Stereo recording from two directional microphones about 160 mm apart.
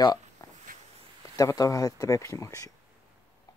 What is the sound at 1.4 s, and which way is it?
Speech, 20° left (ahead or behind).